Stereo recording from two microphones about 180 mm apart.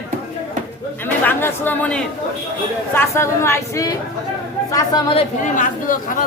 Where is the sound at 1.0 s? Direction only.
10° left (ahead or behind).